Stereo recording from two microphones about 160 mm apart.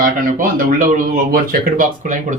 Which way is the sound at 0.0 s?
55° right (ahead or behind).